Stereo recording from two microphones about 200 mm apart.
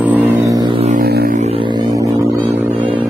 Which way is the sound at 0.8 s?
45° right (ahead or behind).